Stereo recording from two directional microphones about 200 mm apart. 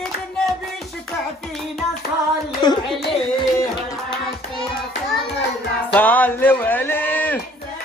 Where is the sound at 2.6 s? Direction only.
20° left (ahead or behind).